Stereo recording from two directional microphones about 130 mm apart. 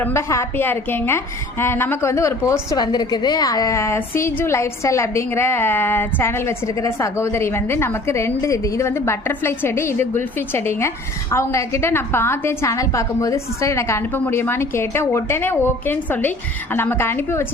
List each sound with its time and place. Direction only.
0.0 s a woman's voice: 20° left (ahead or behind)